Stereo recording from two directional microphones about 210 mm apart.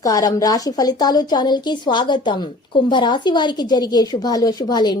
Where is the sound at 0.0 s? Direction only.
15° left (ahead or behind).